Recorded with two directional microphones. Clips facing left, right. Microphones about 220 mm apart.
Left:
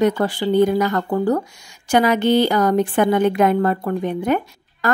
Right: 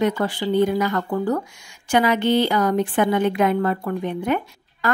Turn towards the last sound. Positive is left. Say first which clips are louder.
# left 3 dB
turn(degrees=45)  # may be behind; listen again after turning